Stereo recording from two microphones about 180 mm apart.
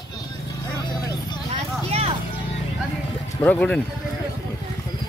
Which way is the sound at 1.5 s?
35° right (ahead or behind).